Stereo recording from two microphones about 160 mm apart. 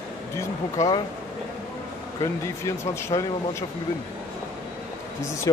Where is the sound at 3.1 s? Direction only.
30° left (ahead or behind).